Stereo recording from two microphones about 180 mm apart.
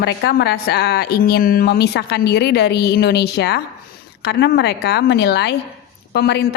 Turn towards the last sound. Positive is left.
turn(degrees=65)  # may be behind; listen again after turning